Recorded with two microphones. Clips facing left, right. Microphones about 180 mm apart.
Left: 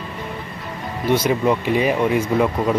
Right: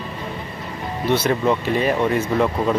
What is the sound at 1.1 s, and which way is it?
Speech, 10° left (ahead or behind).